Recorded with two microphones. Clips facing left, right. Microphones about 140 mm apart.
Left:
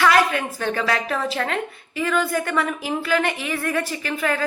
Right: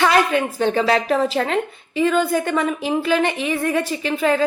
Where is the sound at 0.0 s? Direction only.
25° right (ahead or behind).